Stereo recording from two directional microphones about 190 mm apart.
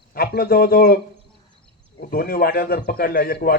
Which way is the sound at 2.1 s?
50° left (ahead or behind).